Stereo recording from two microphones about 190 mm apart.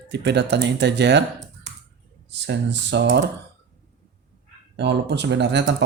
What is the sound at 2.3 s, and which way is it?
Speech, 65° right (ahead or behind).